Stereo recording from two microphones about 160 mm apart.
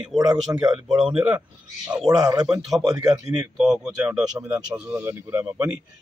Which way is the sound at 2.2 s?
25° right (ahead or behind).